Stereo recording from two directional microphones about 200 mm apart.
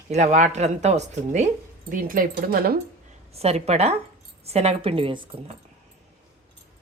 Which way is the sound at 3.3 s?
30° right (ahead or behind).